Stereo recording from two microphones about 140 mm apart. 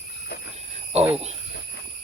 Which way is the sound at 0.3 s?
90° left.